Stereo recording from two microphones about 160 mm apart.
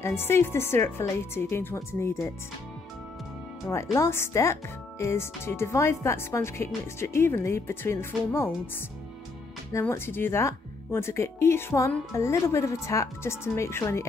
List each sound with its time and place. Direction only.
0.0 s speech: 15° left (ahead or behind)
3.6 s speech: 15° left (ahead or behind)
9.7 s speech: 15° left (ahead or behind)